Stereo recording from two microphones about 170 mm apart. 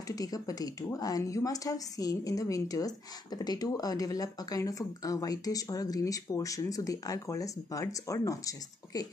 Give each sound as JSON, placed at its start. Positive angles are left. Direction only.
{"t": 0.1, "sound": "speech", "side_deg": 20}